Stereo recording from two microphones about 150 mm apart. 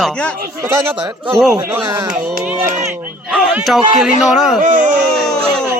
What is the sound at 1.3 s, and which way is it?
Speech, centre (ahead or behind).